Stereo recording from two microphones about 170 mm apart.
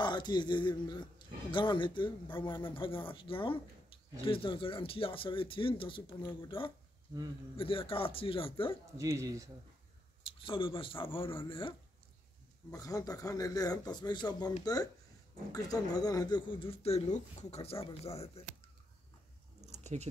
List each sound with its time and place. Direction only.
0.0 s speech: 25° left (ahead or behind)
8.9 s speech: 20° right (ahead or behind)
10.2 s speech: 30° left (ahead or behind)
12.7 s speech: 20° left (ahead or behind); by 18.4 s 35° left (ahead or behind)
19.6 s a sound: 40° right (ahead or behind)